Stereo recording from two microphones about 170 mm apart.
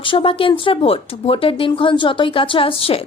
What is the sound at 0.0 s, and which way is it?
Speech, 30° left (ahead or behind).